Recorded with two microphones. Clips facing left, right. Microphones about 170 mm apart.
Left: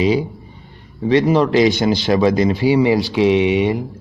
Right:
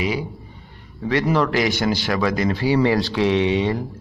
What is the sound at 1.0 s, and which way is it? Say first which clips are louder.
Speech: left 5 dB; 20° left (ahead or behind).